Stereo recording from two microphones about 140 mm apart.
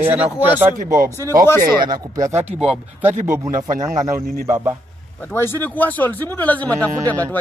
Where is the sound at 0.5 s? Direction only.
15° right (ahead or behind).